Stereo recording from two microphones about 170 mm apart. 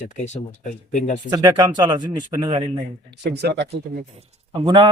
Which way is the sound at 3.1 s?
90° right.